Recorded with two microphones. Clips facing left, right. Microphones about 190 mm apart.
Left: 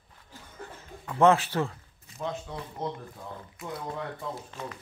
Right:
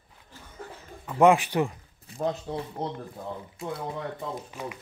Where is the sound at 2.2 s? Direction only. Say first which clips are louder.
Right 5 dB; 35° right (ahead or behind).